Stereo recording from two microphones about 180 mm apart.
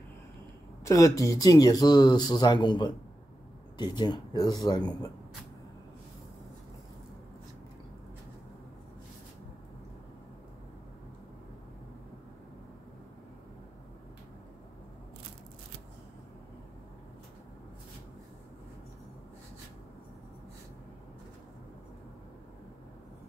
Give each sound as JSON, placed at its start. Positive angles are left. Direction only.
{"t": 0.8, "sound": "speech", "side_deg": 15}